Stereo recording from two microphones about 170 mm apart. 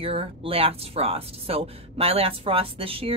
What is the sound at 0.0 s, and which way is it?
Speech, 35° right (ahead or behind).